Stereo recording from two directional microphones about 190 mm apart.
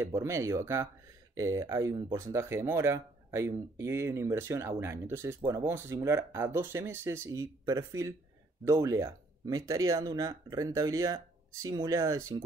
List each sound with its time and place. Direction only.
0.0 s speech: 15° right (ahead or behind)